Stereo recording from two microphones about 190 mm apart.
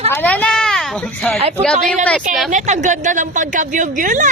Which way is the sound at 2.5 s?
40° right (ahead or behind).